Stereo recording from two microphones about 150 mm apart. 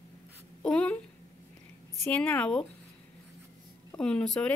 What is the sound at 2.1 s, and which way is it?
Speech, 10° left (ahead or behind).